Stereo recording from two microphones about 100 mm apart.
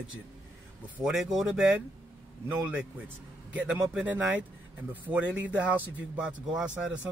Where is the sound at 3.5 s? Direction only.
10° right (ahead or behind).